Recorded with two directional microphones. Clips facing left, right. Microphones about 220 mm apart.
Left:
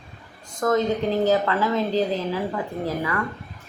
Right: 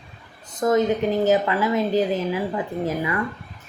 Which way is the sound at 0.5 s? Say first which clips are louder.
Right 2 dB; 20° right (ahead or behind).